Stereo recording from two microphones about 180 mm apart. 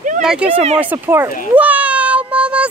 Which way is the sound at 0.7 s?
10° right (ahead or behind).